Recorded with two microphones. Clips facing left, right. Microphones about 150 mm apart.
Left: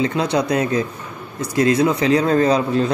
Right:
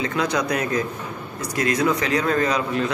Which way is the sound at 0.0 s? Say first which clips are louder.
Left 4 dB; 30° left (ahead or behind).